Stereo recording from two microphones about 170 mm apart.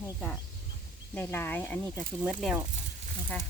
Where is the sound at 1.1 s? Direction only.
15° left (ahead or behind).